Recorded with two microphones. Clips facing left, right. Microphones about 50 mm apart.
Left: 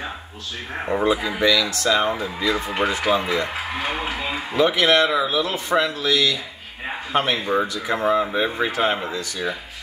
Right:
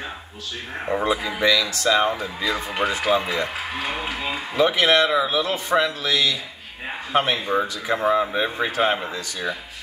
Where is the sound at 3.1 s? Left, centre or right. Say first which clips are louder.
Left 1 dB; centre.